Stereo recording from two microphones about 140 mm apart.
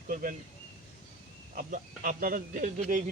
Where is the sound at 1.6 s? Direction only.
70° right (ahead or behind).